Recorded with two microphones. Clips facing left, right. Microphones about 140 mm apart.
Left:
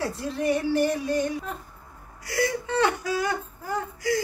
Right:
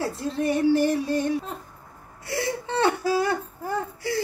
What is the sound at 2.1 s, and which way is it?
Whimper, 25° right (ahead or behind).